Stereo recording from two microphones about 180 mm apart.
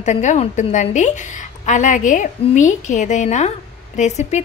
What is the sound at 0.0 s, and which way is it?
A woman's voice, 40° left (ahead or behind).